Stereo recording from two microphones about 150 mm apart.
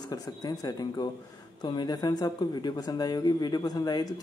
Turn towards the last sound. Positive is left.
turn(degrees=25)  # may be behind; listen again after turning